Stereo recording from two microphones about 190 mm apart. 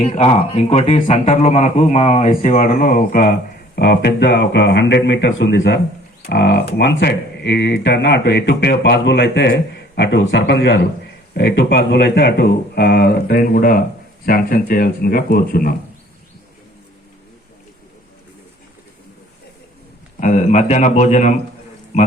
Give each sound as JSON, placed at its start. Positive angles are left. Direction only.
{"t": 0.0, "sound": "speech", "side_deg": 30}
{"t": 3.8, "sound": "speech", "side_deg": 60}
{"t": 20.1, "sound": "speech", "side_deg": 40}